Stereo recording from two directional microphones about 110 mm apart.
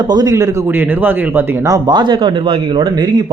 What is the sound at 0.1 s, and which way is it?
Speech, 35° right (ahead or behind).